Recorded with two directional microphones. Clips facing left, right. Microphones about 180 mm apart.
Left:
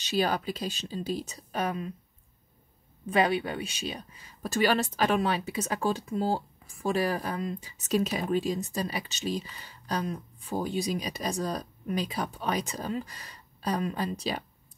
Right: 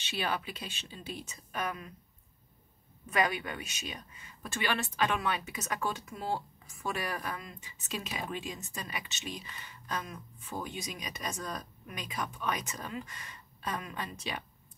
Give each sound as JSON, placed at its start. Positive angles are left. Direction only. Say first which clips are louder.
{"t": 0.0, "sound": "speech", "louder": "left 7 dB", "side_deg": 40}
{"t": 3.1, "sound": "speech", "louder": "left 6 dB", "side_deg": 30}